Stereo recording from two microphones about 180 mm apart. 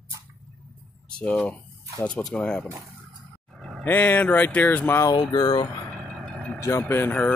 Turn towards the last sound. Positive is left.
turn(degrees=10)  # may be behind; listen again after turning